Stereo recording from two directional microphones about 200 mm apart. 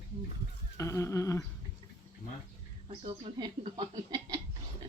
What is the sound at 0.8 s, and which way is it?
Speech, 15° left (ahead or behind).